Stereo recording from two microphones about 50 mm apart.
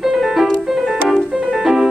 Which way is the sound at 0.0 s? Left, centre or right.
Centre.